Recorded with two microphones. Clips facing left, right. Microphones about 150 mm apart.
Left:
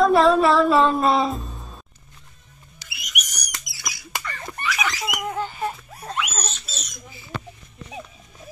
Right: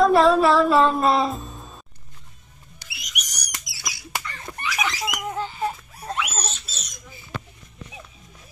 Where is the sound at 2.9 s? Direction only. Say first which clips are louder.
Left 3 dB; 55° left (ahead or behind).